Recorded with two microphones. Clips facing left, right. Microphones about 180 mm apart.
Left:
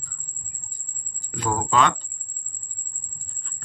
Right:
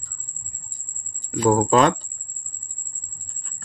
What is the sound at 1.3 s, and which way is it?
Speech, 40° right (ahead or behind).